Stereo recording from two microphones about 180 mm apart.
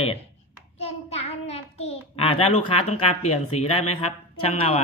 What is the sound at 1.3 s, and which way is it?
A child's voice, 35° left (ahead or behind).